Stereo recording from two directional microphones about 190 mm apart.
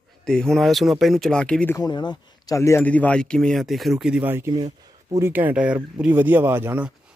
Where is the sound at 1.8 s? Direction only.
25° left (ahead or behind); by 6.9 s 10° right (ahead or behind).